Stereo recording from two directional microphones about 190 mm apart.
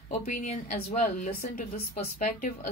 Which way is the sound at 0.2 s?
35° left (ahead or behind).